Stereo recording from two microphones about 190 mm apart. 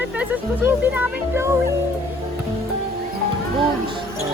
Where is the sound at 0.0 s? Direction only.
10° right (ahead or behind).